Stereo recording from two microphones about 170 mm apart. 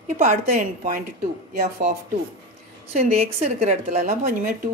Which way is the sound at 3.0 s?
40° right (ahead or behind).